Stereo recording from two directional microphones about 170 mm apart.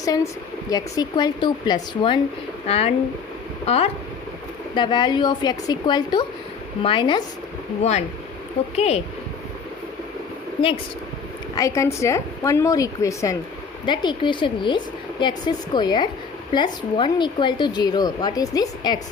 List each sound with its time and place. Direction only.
0.0 s a woman's voice: 20° left (ahead or behind)
2.6 s speech: 35° left (ahead or behind)
4.7 s a woman's voice: 25° left (ahead or behind)
7.8 s speech: 40° left (ahead or behind)
11.5 s a woman's voice: 20° left (ahead or behind)